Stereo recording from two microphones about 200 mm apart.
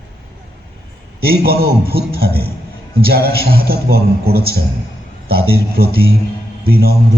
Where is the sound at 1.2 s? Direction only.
50° right (ahead or behind).